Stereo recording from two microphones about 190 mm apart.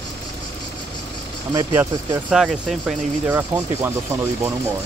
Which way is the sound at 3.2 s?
10° right (ahead or behind).